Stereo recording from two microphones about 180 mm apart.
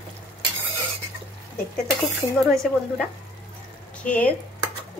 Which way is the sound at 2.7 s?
Centre (ahead or behind).